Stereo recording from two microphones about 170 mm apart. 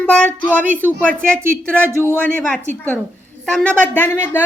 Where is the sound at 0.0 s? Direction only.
10° left (ahead or behind).